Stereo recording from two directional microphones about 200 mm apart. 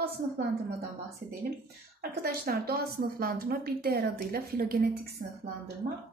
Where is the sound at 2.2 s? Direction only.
50° right (ahead or behind).